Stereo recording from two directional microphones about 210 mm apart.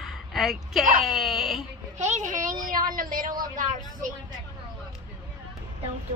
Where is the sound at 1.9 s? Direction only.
35° right (ahead or behind).